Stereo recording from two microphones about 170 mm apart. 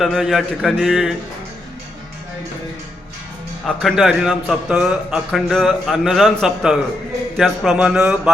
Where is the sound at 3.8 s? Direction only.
Centre (ahead or behind).